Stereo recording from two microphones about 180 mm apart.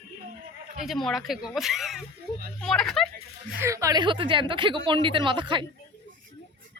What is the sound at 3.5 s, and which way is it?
A woman's voice, 15° right (ahead or behind).